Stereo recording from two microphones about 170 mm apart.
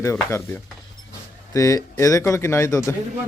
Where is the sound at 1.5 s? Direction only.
20° left (ahead or behind).